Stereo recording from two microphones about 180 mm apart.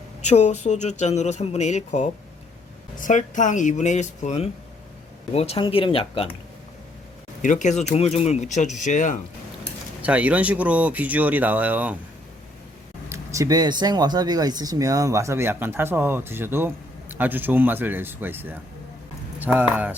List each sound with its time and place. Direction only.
0.2 s speech: 40° left (ahead or behind)
7.4 s speech: 40° left (ahead or behind)
10.0 s speech: 10° right (ahead or behind)
13.1 s speech: 15° right (ahead or behind)